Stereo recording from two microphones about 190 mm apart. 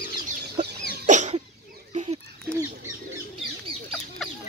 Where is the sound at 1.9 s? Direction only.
35° right (ahead or behind).